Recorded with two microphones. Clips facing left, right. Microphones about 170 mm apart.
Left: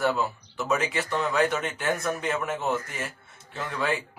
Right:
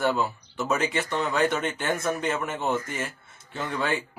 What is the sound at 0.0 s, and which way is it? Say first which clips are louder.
Speech: right 1 dB; centre (ahead or behind).